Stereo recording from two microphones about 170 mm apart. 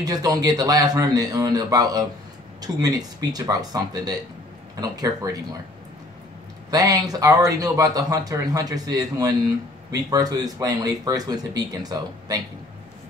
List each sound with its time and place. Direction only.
0.0 s speech: 20° right (ahead or behind)
6.7 s speech: 20° right (ahead or behind)